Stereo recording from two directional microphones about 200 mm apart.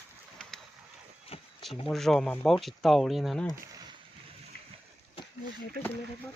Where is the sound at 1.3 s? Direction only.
30° left (ahead or behind).